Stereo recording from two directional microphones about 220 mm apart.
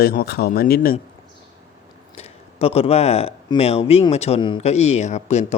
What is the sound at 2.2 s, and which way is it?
Speech, 30° left (ahead or behind).